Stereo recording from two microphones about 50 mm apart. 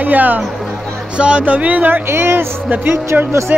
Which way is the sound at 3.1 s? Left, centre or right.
Right.